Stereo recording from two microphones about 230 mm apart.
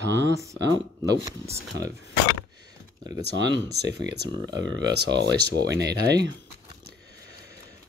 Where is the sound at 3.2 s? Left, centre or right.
Right.